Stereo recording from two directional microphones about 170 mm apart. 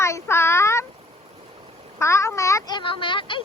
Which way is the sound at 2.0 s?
15° left (ahead or behind).